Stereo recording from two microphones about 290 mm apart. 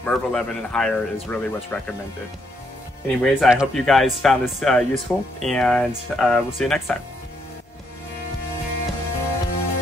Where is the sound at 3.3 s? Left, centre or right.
Centre.